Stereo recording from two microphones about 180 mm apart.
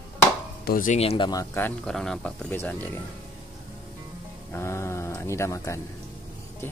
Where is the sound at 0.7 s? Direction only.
50° left (ahead or behind).